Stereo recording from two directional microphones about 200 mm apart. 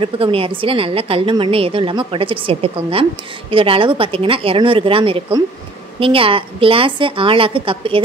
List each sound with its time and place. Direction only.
0.0 s a woman's voice: 25° right (ahead or behind)